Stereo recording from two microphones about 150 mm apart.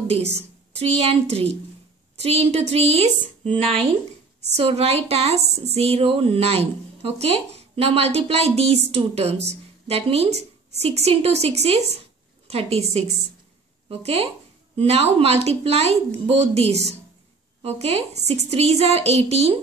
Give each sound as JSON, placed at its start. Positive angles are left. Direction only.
{"t": 0.0, "sound": "a woman's voice", "side_deg": -45}
{"t": 2.1, "sound": "speech", "side_deg": -45}